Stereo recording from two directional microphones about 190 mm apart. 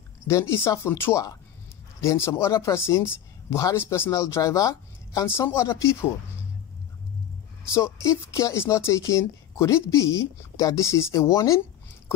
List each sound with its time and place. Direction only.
0.3 s speech: 15° left (ahead or behind)
7.7 s speech: 15° left (ahead or behind)